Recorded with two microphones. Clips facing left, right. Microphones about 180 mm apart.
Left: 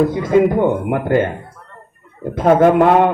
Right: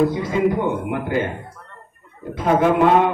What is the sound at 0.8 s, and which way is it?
Speech, 50° left (ahead or behind).